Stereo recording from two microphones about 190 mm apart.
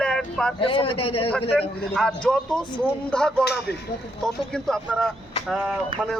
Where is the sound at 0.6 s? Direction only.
25° left (ahead or behind).